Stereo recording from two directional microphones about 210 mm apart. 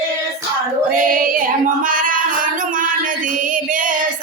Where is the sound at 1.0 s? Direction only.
40° right (ahead or behind).